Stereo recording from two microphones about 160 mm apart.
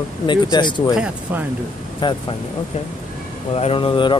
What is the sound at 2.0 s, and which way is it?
Speech, 30° left (ahead or behind).